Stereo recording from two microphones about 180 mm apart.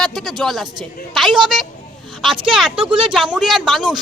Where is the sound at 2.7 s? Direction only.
30° right (ahead or behind).